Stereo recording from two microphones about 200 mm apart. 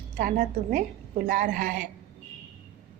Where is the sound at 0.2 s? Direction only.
40° right (ahead or behind).